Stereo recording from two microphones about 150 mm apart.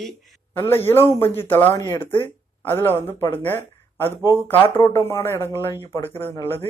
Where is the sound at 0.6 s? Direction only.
15° left (ahead or behind).